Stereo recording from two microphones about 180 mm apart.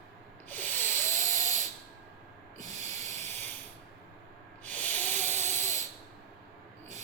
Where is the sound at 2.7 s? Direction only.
40° right (ahead or behind).